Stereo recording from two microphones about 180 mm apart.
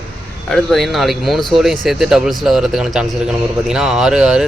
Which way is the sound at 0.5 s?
Centre (ahead or behind).